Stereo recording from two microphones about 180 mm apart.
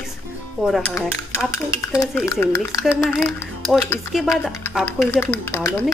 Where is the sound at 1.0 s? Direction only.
15° left (ahead or behind).